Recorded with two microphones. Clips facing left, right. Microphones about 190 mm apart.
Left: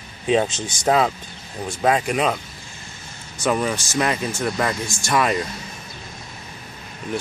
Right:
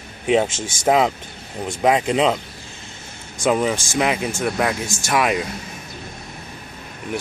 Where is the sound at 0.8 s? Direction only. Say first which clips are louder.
Right 2 dB; 15° right (ahead or behind).